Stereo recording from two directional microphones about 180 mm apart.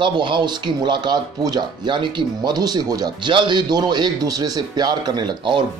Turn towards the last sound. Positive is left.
turn(degrees=-25)  # may be behind; listen again after turning